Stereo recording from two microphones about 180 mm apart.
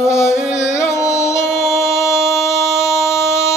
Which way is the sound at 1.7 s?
15° left (ahead or behind).